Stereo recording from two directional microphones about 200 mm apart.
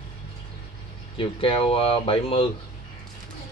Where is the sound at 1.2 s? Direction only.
25° left (ahead or behind).